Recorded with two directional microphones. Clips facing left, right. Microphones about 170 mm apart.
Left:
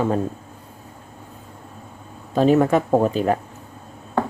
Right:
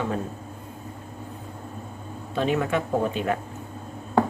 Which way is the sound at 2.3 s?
40° left (ahead or behind).